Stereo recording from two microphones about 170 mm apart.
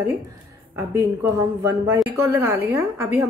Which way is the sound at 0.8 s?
15° right (ahead or behind).